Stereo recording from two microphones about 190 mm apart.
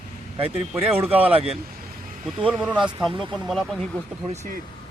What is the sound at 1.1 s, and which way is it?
Speech, 30° right (ahead or behind).